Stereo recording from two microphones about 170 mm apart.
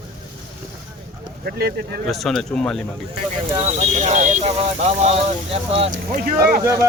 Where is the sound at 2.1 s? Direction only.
Centre (ahead or behind).